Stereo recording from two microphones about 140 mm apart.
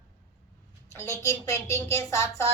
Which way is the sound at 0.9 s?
15° left (ahead or behind).